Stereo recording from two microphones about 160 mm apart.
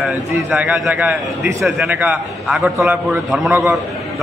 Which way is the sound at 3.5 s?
20° right (ahead or behind).